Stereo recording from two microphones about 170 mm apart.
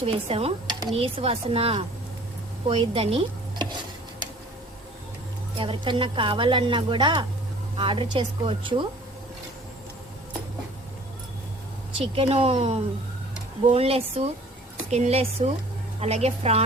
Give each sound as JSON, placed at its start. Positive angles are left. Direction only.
{"t": 0.0, "sound": "speech", "side_deg": -35}
{"t": 5.5, "sound": "a woman's voice", "side_deg": -30}
{"t": 11.9, "sound": "speech", "side_deg": -35}